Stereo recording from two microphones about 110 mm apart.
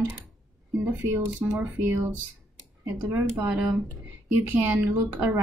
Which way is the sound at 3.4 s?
15° right (ahead or behind).